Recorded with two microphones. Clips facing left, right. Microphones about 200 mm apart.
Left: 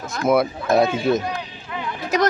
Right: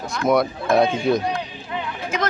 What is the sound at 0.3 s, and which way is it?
Speech, 5° left (ahead or behind).